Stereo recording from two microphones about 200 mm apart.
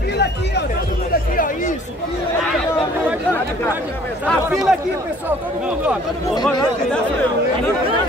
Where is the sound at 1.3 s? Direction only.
45° left (ahead or behind).